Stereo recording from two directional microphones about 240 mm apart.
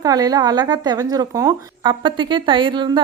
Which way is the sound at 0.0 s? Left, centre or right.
Centre.